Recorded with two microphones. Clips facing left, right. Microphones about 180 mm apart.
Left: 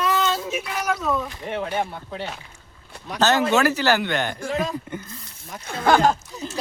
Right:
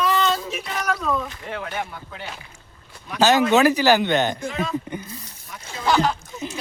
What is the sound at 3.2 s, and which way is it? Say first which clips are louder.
Speech: right 3 dB; 15° right (ahead or behind).